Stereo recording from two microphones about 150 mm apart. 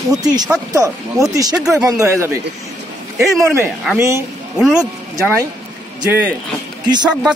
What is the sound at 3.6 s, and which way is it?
Speech, centre (ahead or behind).